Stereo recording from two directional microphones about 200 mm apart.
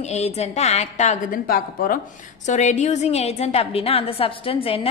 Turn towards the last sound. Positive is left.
turn(degrees=30)  # may be behind; listen again after turning